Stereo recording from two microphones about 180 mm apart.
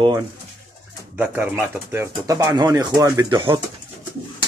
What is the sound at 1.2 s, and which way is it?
Speech, 10° right (ahead or behind).